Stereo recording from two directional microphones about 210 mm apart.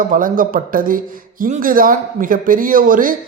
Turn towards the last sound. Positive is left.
turn(degrees=-40)  # may be behind; listen again after turning